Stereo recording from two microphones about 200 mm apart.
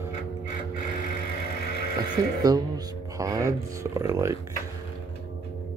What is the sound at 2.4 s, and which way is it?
Speech, 20° right (ahead or behind).